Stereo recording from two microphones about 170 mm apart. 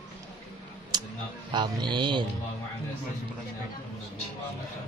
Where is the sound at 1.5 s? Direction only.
25° right (ahead or behind).